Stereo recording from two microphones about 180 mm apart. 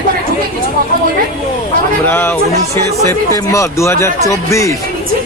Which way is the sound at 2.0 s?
10° left (ahead or behind).